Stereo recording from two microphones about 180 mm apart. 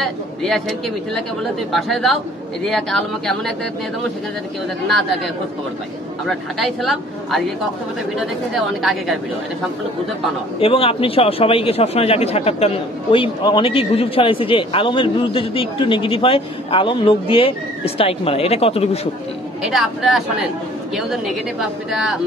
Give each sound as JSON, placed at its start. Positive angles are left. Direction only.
{"t": 0.0, "sound": "speech", "side_deg": 0}
{"t": 6.2, "sound": "speech", "side_deg": 0}
{"t": 10.6, "sound": "a man's voice", "side_deg": 30}
{"t": 19.6, "sound": "speech", "side_deg": 0}